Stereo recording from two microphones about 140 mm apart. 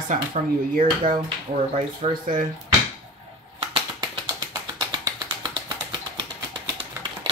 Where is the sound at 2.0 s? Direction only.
50° right (ahead or behind).